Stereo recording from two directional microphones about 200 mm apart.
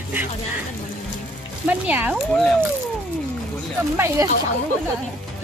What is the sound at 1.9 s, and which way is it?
Speech, 10° right (ahead or behind).